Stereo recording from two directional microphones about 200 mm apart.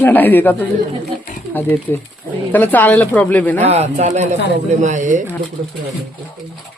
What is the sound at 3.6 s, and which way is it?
Speech, 35° right (ahead or behind).